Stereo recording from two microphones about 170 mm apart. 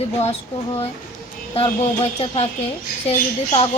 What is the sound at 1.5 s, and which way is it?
Speech, 35° left (ahead or behind).